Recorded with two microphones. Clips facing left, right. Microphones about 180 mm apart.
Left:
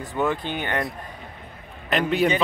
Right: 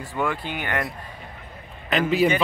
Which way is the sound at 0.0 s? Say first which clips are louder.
Left 2 dB; 20° left (ahead or behind).